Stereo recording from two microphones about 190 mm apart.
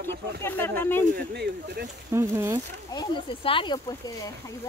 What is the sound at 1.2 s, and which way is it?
Speech, 55° right (ahead or behind).